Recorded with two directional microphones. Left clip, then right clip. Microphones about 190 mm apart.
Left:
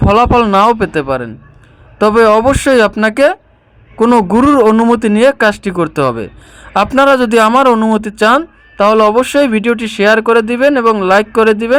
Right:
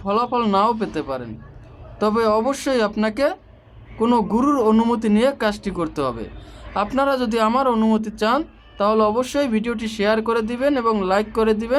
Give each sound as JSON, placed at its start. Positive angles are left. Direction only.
{"t": 0.1, "sound": "speech", "side_deg": 30}
{"t": 4.7, "sound": "speech", "side_deg": 20}
{"t": 4.9, "sound": "speech", "side_deg": 30}